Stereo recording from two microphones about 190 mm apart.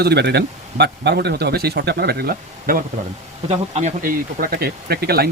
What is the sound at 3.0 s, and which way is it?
Speech, 40° right (ahead or behind).